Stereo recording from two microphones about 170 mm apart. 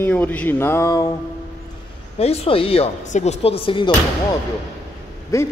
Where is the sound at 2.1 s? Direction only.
35° left (ahead or behind).